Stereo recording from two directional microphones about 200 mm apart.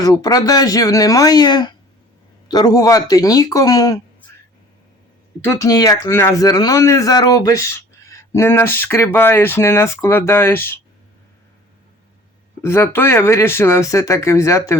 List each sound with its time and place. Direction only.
0.0 s speech: 20° left (ahead or behind)
5.5 s speech: 20° left (ahead or behind)
12.6 s speech: 10° left (ahead or behind)